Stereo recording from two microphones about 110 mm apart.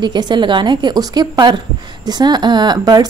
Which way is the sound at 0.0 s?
40° right (ahead or behind).